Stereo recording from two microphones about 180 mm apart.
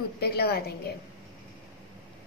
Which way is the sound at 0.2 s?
60° left (ahead or behind).